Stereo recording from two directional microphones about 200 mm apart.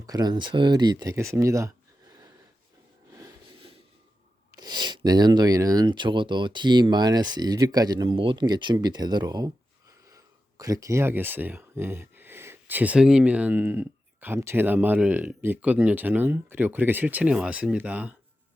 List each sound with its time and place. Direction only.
0.0 s speech: 20° right (ahead or behind)
3.1 s a sound: 15° right (ahead or behind)
4.5 s speech: 20° right (ahead or behind)